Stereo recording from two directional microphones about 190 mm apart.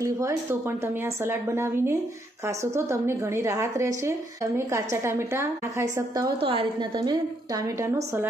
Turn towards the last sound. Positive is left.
turn(degrees=-15)  # may be behind; listen again after turning